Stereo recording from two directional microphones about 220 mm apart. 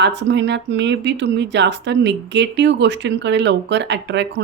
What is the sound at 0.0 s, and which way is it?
Speech, 50° right (ahead or behind).